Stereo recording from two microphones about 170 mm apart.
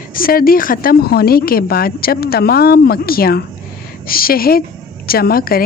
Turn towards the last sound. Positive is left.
turn(degrees=60)  # may be behind; listen again after turning